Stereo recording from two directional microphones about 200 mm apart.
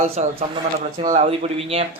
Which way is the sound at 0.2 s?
35° right (ahead or behind).